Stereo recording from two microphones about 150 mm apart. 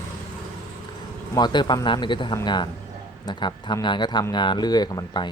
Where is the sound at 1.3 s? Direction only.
30° left (ahead or behind).